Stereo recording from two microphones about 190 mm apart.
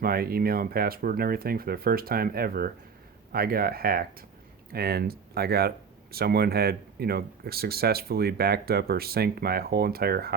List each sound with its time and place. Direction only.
0.0 s speech: 50° right (ahead or behind)